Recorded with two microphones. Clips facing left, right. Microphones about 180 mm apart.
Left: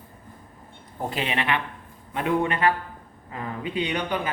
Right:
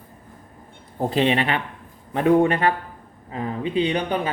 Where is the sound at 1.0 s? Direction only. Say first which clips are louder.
Right 8 dB; 35° right (ahead or behind).